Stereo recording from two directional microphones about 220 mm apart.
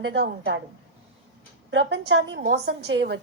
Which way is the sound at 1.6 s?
60° right (ahead or behind).